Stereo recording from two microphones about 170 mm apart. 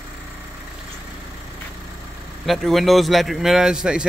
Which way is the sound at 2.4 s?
Centre (ahead or behind).